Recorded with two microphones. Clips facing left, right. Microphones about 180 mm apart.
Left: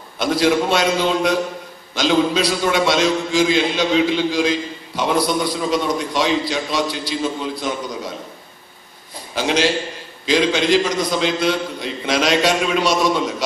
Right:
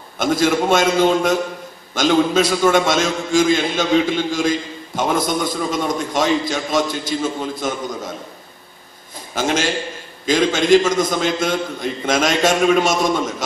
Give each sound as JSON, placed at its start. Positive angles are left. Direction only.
{"t": 0.2, "sound": "a man's voice", "side_deg": -50}
{"t": 9.3, "sound": "a man's voice", "side_deg": -45}